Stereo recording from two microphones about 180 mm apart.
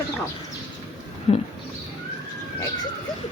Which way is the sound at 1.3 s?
35° left (ahead or behind).